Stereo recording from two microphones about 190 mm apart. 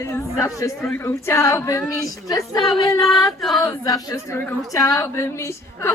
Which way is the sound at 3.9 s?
20° left (ahead or behind).